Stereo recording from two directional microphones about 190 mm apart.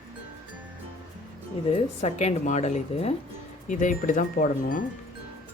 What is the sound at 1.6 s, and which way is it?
Speech, 35° left (ahead or behind).